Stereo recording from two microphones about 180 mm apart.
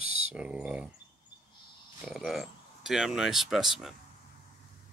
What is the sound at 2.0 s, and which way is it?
Speech, centre (ahead or behind).